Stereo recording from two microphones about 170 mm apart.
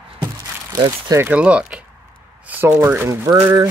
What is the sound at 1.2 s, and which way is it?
Speech, 10° right (ahead or behind).